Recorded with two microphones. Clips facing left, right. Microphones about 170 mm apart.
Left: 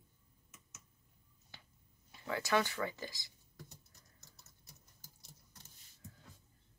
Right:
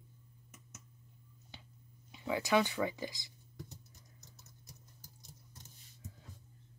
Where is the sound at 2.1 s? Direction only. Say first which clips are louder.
Right 3 dB; 15° right (ahead or behind).